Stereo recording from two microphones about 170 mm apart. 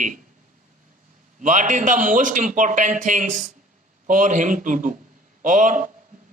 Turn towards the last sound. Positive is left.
turn(degrees=-50)  # may be behind; listen again after turning